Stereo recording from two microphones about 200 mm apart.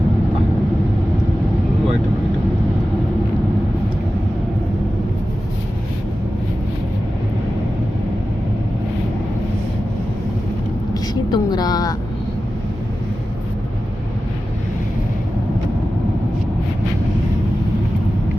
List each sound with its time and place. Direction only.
10.9 s vehicle: 20° left (ahead or behind)